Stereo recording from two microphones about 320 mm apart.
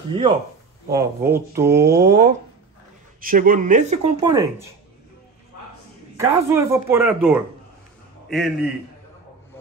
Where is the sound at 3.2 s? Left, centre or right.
Right; by 4.6 s centre.